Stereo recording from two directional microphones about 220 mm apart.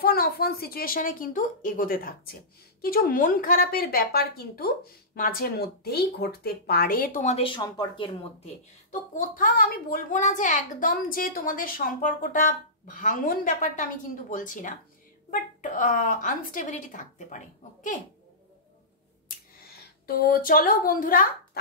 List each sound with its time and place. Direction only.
0.0 s a woman's voice: 45° left (ahead or behind); by 8.5 s 25° left (ahead or behind)
9.1 s a woman's voice: 40° left (ahead or behind)
19.2 s a sound: 45° left (ahead or behind)